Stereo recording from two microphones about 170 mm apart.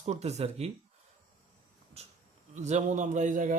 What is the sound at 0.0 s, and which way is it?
Speech, 40° right (ahead or behind).